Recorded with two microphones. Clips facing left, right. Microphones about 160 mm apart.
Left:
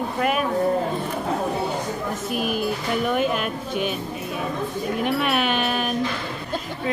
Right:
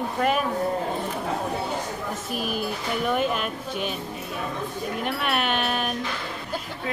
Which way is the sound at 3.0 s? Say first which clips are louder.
Left 1 dB; centre (ahead or behind).